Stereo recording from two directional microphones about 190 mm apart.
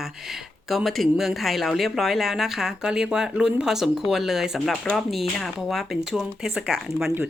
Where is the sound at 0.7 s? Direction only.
Centre (ahead or behind).